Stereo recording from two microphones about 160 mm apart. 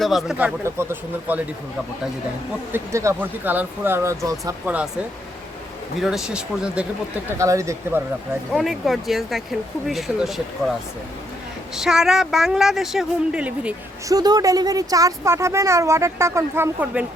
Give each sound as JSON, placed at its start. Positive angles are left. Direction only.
{"t": 0.0, "sound": "a woman's voice", "side_deg": 0}
{"t": 2.7, "sound": "a woman's voice", "side_deg": -20}
{"t": 4.6, "sound": "a woman's voice", "side_deg": -10}
{"t": 6.0, "sound": "speech", "side_deg": -5}
{"t": 7.3, "sound": "a woman's voice", "side_deg": -20}
{"t": 8.5, "sound": "speech", "side_deg": 0}
{"t": 11.7, "sound": "speech", "side_deg": -5}
{"t": 14.1, "sound": "a woman's voice", "side_deg": -25}